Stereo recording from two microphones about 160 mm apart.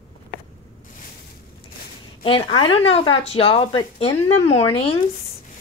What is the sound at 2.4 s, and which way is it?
Speech, 30° left (ahead or behind).